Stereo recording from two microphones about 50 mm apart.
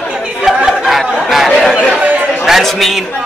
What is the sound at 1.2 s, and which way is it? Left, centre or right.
Speech, centre.